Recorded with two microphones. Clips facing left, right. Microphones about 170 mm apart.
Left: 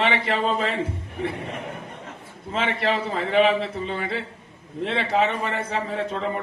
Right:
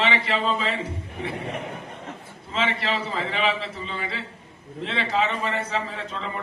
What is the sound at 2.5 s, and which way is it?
A man's voice, 55° left (ahead or behind).